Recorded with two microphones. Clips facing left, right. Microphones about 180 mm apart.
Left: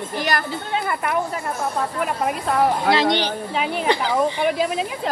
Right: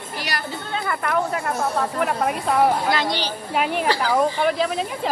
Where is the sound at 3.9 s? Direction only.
20° left (ahead or behind).